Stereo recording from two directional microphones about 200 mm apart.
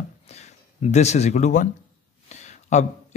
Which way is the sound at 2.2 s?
35° left (ahead or behind).